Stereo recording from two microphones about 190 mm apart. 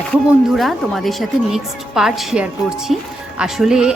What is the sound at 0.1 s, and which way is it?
Speech, centre (ahead or behind).